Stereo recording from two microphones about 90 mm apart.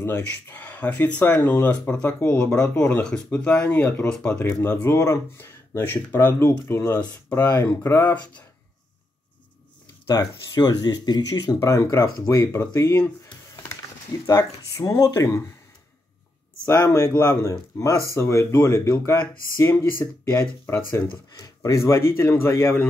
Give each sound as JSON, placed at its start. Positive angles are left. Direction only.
{"t": 0.0, "sound": "speech", "side_deg": 25}
{"t": 10.0, "sound": "speech", "side_deg": 45}
{"t": 11.6, "sound": "speech", "side_deg": 35}
{"t": 16.6, "sound": "speech", "side_deg": 40}